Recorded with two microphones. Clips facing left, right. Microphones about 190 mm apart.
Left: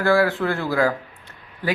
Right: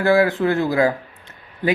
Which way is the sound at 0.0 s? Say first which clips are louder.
Right 3 dB; 20° right (ahead or behind).